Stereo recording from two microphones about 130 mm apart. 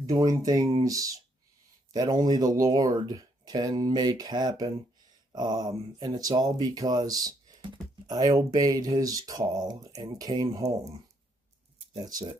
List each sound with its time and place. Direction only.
0.0 s speech: 25° right (ahead or behind)